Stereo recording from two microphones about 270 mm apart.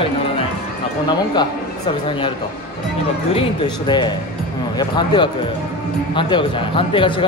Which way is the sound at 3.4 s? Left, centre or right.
Centre.